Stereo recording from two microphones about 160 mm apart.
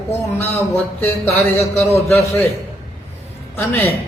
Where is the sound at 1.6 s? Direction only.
40° left (ahead or behind).